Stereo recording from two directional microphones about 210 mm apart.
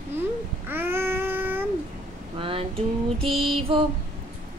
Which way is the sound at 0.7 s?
10° right (ahead or behind).